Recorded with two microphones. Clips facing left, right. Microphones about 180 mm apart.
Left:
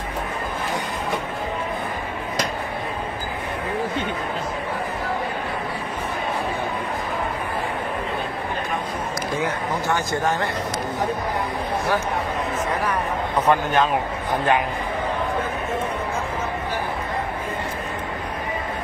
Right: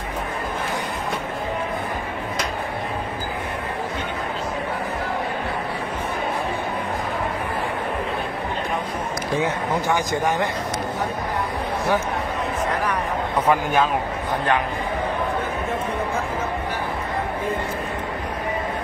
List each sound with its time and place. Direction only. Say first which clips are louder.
9.8 s a man's voice: even; 15° right (ahead or behind)
13.5 s a man's voice: even; 10° right (ahead or behind)